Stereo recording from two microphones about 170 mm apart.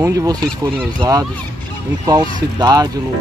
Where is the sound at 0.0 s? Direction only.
20° right (ahead or behind).